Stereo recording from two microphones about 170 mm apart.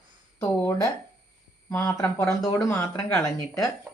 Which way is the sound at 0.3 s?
15° left (ahead or behind).